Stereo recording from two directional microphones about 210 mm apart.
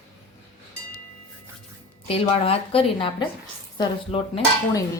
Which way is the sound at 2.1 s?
30° left (ahead or behind).